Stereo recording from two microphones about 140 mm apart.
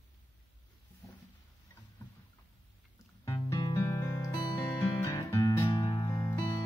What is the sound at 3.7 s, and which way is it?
Music, 20° left (ahead or behind).